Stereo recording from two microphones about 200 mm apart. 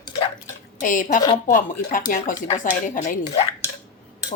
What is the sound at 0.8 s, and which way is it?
Speech, 40° left (ahead or behind).